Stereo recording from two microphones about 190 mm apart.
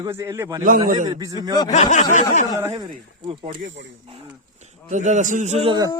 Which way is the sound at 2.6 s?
20° right (ahead or behind).